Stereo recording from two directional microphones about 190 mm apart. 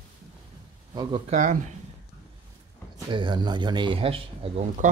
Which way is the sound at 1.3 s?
40° right (ahead or behind).